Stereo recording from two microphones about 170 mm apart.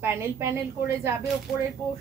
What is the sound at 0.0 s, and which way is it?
A woman's voice, 15° right (ahead or behind).